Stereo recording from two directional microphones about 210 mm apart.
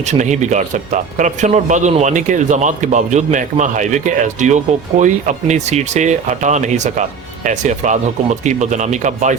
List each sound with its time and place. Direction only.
0.1 s speech: 35° right (ahead or behind)